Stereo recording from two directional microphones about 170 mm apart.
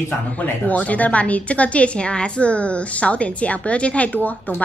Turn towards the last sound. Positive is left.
turn(degrees=10)  # may be behind; listen again after turning